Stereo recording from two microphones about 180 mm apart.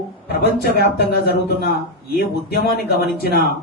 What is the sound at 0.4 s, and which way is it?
A man's voice, 60° left (ahead or behind).